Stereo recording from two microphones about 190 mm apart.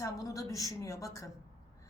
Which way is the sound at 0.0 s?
15° left (ahead or behind).